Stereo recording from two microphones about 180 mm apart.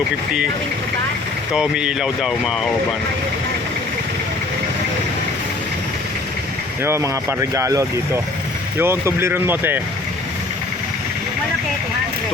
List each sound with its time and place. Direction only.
1.5 s speech: 5° right (ahead or behind)
6.8 s speech: 15° right (ahead or behind)